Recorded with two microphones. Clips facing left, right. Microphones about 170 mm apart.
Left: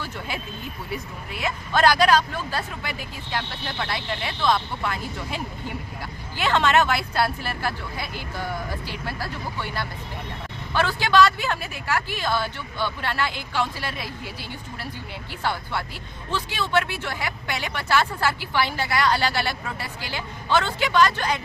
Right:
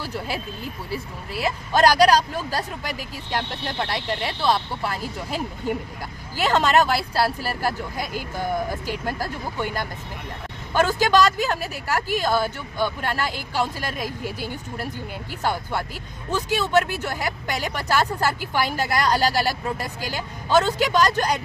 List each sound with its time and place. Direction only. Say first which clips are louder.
0.0 s a woman's voice: right 3 dB; 35° right (ahead or behind)
16.3 s speech: right 4 dB; 45° right (ahead or behind)